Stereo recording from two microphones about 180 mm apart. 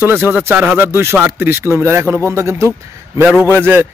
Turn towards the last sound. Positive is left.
turn(degrees=-10)  # may be behind; listen again after turning